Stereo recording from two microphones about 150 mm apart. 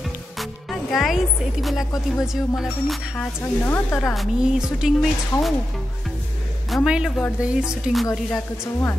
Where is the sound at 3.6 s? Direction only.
15° left (ahead or behind).